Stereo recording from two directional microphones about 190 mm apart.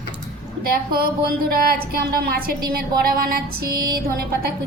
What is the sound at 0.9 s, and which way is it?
Music, 50° right (ahead or behind).